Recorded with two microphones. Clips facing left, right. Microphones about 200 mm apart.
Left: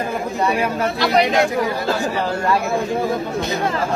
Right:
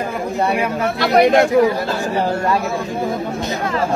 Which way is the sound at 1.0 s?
55° right (ahead or behind).